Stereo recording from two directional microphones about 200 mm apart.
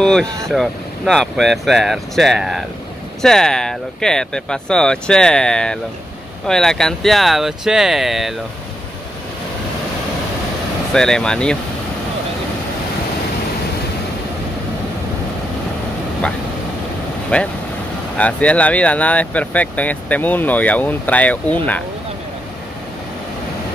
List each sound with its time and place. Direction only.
0.0 s speech: 5° left (ahead or behind)
10.9 s speech: 5° left (ahead or behind)
17.3 s speech: 5° left (ahead or behind)